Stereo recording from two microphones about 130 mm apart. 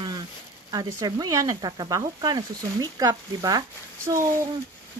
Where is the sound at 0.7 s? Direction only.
30° right (ahead or behind).